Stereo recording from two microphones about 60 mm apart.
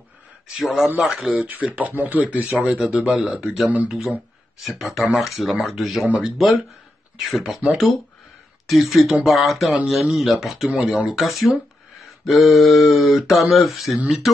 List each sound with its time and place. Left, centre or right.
0.5 s speech: centre
1.3 s speech: centre
3.6 s speech: right
4.6 s speech: centre
8.6 s speech: centre